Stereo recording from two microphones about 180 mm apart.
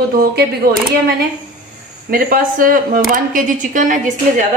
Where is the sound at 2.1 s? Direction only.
50° right (ahead or behind).